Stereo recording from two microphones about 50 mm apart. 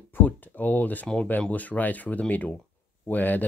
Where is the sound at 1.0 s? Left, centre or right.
Left.